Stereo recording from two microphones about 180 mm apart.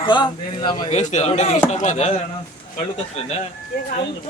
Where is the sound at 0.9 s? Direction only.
40° left (ahead or behind).